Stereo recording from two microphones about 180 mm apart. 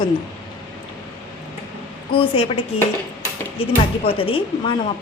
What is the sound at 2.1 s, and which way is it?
Speech, 30° left (ahead or behind).